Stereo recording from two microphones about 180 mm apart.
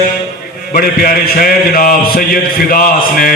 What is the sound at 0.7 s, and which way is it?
A man's voice, 55° left (ahead or behind).